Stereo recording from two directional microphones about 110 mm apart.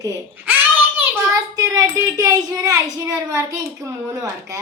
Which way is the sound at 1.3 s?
30° right (ahead or behind).